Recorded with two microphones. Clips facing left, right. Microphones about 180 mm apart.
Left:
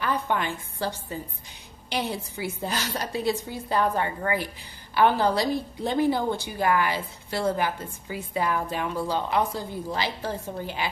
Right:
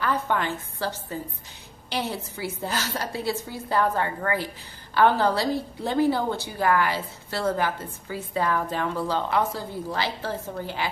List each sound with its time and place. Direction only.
0.0 s a woman's voice: 15° left (ahead or behind)